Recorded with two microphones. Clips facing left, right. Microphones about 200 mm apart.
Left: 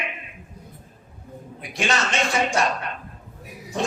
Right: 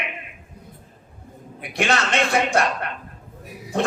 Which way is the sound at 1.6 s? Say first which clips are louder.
Right 3 dB; 60° right (ahead or behind).